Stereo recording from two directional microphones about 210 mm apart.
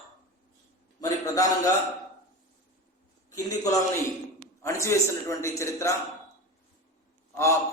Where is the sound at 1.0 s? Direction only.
15° left (ahead or behind).